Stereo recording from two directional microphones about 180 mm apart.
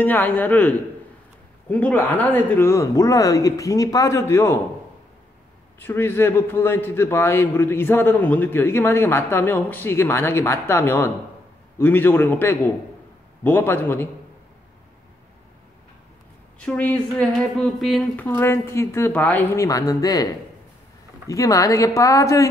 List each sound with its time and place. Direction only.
0.0 s a man's voice: 10° left (ahead or behind)
5.8 s a man's voice: 10° left (ahead or behind)
16.6 s a man's voice: 5° left (ahead or behind)
21.3 s a man's voice: 20° left (ahead or behind)